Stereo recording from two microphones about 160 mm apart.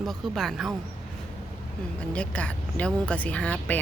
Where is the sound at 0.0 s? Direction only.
Centre (ahead or behind).